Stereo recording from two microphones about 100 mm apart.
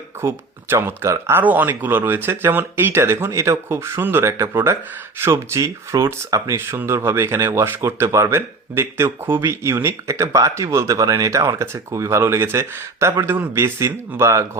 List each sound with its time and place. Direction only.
0.2 s speech: 25° right (ahead or behind)